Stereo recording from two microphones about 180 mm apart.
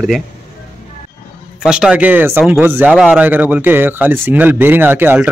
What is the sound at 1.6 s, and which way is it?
Speech, 5° right (ahead or behind).